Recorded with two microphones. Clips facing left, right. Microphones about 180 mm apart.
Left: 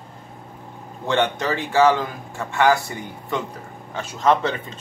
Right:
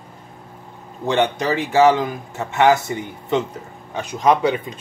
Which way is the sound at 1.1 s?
15° right (ahead or behind).